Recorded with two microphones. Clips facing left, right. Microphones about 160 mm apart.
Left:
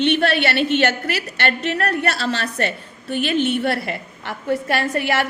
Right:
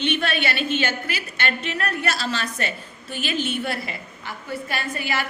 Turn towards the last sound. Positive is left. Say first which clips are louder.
# left 7 dB
turn(degrees=75)  # may be behind; listen again after turning